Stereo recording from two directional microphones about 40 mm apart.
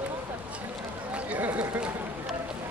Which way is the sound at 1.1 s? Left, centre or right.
Right.